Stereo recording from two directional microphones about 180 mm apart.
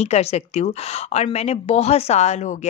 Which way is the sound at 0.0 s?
35° left (ahead or behind).